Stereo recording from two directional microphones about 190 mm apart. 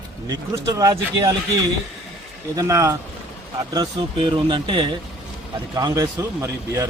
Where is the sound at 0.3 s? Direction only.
20° right (ahead or behind).